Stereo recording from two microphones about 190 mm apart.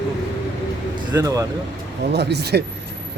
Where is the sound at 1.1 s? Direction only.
20° right (ahead or behind).